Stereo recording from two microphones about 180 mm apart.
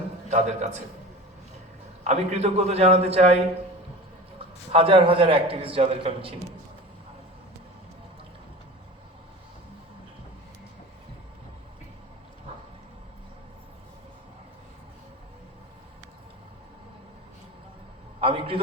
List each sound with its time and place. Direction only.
0.3 s a man's voice: 40° right (ahead or behind)
2.0 s a man's voice: 35° right (ahead or behind)
4.7 s a man's voice: 30° right (ahead or behind)
18.2 s a sound: 30° right (ahead or behind)